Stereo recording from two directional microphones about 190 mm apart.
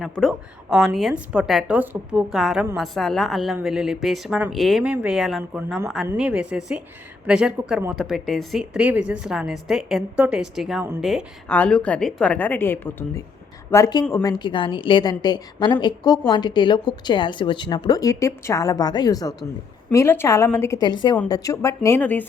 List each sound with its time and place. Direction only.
0.0 s a woman's voice: centre (ahead or behind)